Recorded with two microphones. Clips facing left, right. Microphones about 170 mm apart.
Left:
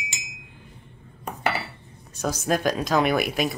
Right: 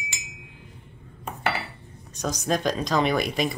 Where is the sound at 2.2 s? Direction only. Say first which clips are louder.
Left 1 dB; 5° left (ahead or behind).